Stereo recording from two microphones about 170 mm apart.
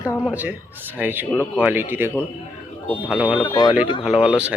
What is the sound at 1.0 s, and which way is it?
Speech, 10° right (ahead or behind).